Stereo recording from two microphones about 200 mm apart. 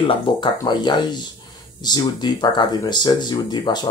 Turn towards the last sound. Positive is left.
turn(degrees=20)  # may be behind; listen again after turning